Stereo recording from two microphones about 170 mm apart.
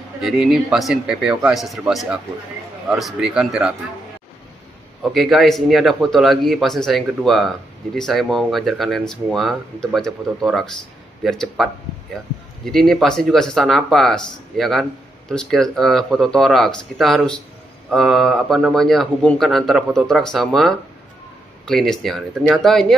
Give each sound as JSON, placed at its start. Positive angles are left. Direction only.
{"t": 0.2, "sound": "a man's voice", "side_deg": 0}
{"t": 5.0, "sound": "a man's voice", "side_deg": 0}